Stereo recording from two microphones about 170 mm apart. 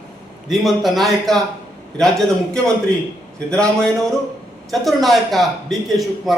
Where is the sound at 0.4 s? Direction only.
Centre (ahead or behind).